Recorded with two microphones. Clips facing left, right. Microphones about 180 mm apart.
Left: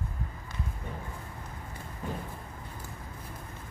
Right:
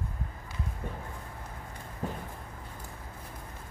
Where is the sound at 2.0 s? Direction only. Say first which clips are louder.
Right 1 dB; 40° right (ahead or behind).